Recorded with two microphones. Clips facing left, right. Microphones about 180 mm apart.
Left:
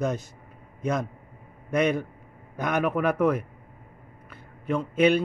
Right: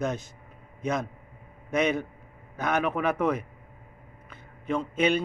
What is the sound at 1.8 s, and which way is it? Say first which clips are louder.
A man's voice: left 2 dB; 10° left (ahead or behind).